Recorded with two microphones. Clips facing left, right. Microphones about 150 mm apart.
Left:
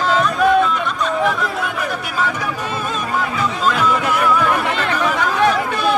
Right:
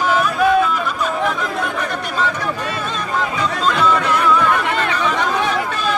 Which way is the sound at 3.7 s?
5° left (ahead or behind).